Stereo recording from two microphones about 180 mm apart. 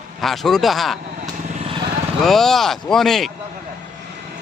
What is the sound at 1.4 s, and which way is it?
Vehicle, 35° right (ahead or behind).